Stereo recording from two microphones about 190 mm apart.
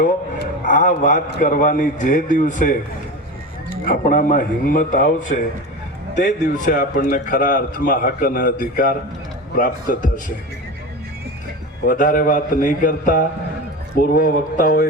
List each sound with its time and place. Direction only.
0.0 s a man's voice: 45° left (ahead or behind)
3.8 s a man's voice: 45° left (ahead or behind)
11.9 s a man's voice: 45° left (ahead or behind)